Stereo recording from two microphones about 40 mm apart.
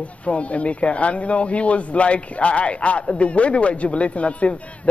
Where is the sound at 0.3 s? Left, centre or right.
Left.